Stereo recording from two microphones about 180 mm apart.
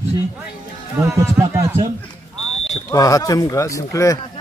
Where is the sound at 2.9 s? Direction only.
20° left (ahead or behind).